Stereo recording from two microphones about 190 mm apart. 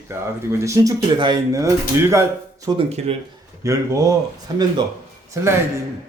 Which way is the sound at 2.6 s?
30° right (ahead or behind).